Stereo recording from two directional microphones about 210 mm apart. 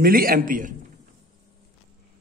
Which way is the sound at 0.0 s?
45° right (ahead or behind).